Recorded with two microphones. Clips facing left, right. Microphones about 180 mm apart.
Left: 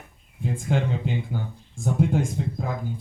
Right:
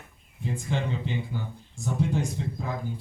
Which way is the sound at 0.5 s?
50° left (ahead or behind).